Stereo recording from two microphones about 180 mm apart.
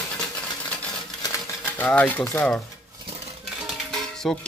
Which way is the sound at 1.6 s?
10° left (ahead or behind).